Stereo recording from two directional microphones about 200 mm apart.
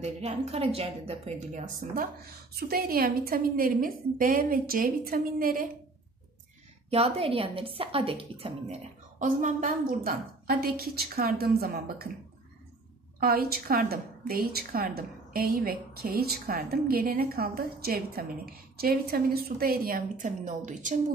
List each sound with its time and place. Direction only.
0.0 s a woman's voice: 30° right (ahead or behind)
6.9 s a woman's voice: 30° right (ahead or behind)
9.2 s a woman's voice: 40° right (ahead or behind)
13.2 s a woman's voice: 50° right (ahead or behind)